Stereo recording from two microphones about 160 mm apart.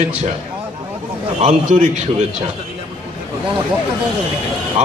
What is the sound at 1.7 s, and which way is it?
Speech, 50° right (ahead or behind).